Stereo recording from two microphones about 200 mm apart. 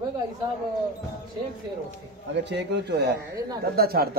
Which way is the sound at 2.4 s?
60° right (ahead or behind).